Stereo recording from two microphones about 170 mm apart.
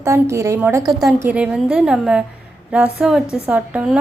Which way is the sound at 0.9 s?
Centre (ahead or behind).